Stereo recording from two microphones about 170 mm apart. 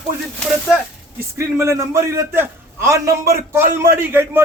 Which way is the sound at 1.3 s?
15° right (ahead or behind).